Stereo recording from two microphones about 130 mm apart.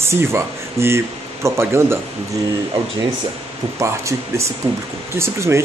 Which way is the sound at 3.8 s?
20° right (ahead or behind).